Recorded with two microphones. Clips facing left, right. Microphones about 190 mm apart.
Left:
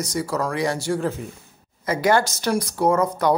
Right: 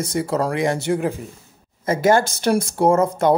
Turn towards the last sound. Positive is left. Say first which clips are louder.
# right 3 dB
turn(degrees=-25)  # may be behind; listen again after turning